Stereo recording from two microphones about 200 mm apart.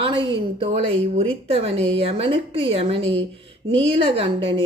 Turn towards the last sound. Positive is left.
turn(degrees=-25)  # may be behind; listen again after turning